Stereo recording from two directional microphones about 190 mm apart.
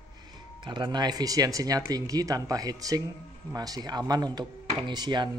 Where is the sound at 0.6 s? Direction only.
25° right (ahead or behind).